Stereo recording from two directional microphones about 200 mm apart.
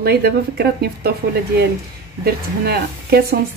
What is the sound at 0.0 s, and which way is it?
Speech, 55° right (ahead or behind).